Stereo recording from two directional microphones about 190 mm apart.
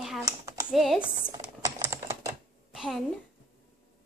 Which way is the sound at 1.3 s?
15° right (ahead or behind).